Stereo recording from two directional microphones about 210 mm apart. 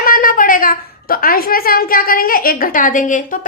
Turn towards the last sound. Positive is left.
turn(degrees=40)  # may be behind; listen again after turning